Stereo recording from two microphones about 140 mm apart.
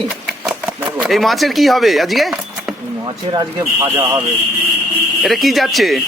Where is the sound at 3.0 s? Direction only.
30° right (ahead or behind).